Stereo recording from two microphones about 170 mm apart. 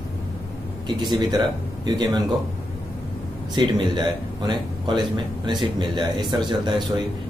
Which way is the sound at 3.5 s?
25° right (ahead or behind).